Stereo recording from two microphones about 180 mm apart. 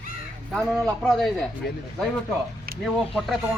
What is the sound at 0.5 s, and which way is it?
Speech, centre (ahead or behind).